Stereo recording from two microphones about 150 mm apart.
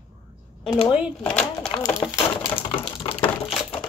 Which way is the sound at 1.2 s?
5° left (ahead or behind).